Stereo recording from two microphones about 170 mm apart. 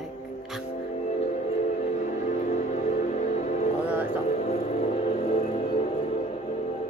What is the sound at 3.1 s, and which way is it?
Music, 45° left (ahead or behind).